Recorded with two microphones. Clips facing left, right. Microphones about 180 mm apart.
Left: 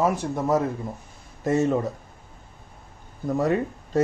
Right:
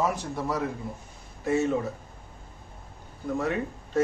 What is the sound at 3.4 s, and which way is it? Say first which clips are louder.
Speech: left 6 dB; 40° left (ahead or behind).